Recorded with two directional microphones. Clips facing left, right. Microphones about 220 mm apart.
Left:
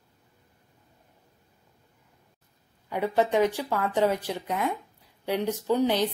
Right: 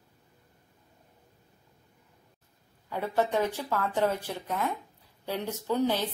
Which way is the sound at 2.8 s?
15° left (ahead or behind).